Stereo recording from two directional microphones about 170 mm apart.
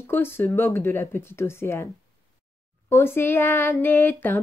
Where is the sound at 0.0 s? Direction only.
15° left (ahead or behind).